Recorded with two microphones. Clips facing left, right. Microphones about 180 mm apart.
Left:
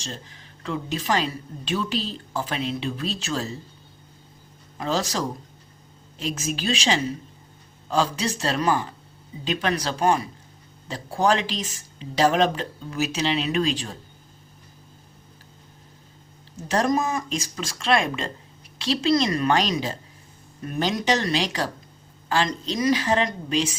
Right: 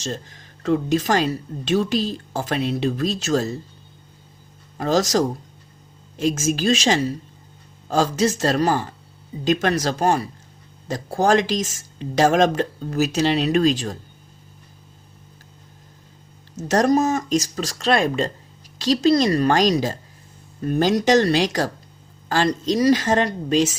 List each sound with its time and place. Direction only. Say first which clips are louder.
0.0 s speech: right 7 dB; 40° right (ahead or behind)
4.8 s speech: right 6 dB; 40° right (ahead or behind)
6.1 s speech: right 8 dB; 45° right (ahead or behind)
16.6 s speech: right 5 dB; 45° right (ahead or behind)